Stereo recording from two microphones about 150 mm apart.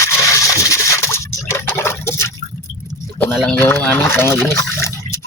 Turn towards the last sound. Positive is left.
turn(degrees=20)  # may be behind; listen again after turning